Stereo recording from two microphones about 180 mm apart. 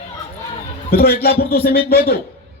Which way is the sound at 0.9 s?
60° left (ahead or behind).